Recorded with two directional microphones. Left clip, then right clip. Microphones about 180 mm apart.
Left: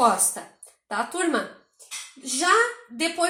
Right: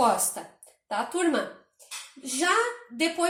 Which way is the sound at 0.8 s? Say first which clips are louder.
Left 1 dB; 40° left (ahead or behind).